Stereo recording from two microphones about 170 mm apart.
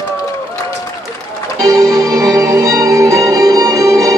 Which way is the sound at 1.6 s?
20° right (ahead or behind).